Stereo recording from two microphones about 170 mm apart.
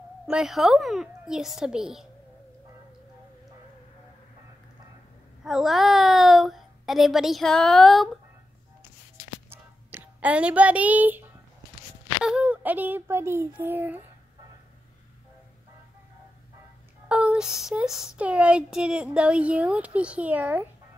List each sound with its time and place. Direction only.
0.3 s a child's voice: centre (ahead or behind)
5.4 s a child's voice: 5° right (ahead or behind)
9.5 s a sound: 10° right (ahead or behind)
12.2 s child singing: 5° right (ahead or behind)
17.1 s child singing: 5° right (ahead or behind)